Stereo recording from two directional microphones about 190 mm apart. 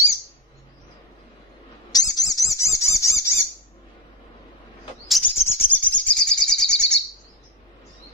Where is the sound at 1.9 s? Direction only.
20° left (ahead or behind).